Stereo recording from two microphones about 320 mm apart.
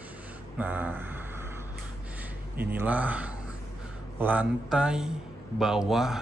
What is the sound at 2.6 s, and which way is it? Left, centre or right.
A man's voice, centre.